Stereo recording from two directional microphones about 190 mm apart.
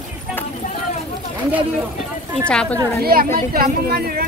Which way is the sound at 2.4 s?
5° left (ahead or behind).